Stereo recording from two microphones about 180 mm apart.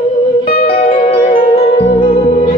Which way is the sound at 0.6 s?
35° left (ahead or behind).